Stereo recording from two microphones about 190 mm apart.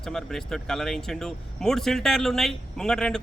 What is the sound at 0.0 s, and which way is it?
Speech, centre (ahead or behind).